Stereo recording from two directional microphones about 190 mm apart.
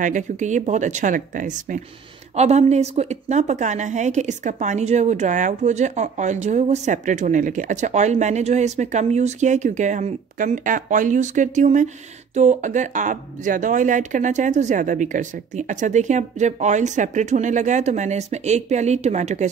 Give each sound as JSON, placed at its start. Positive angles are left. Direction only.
{"t": 0.0, "sound": "a woman's voice", "side_deg": -40}